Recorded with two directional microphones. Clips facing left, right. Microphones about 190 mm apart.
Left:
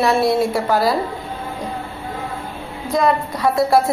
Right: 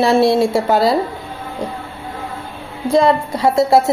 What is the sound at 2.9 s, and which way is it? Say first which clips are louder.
Speech: right 4 dB; 25° right (ahead or behind).